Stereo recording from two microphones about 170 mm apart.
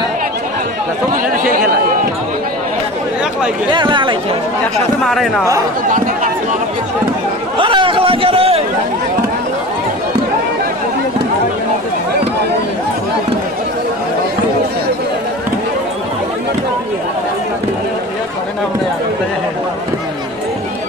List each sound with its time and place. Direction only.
1.1 s speech: 55° right (ahead or behind)
3.7 s speech: 30° right (ahead or behind)
5.0 s speech: centre (ahead or behind)
7.5 s chatter: 30° right (ahead or behind)